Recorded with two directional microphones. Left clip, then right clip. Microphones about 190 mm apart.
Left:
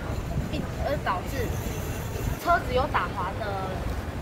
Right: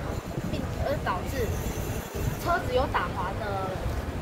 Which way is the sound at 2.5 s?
15° right (ahead or behind).